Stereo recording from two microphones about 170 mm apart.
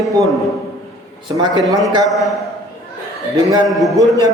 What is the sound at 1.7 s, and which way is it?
Speech, 20° right (ahead or behind).